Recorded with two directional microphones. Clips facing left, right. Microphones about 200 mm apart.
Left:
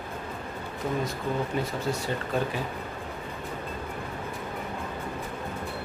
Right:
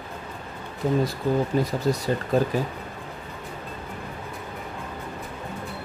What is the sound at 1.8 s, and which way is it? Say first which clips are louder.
Speech: right 5 dB; 40° right (ahead or behind).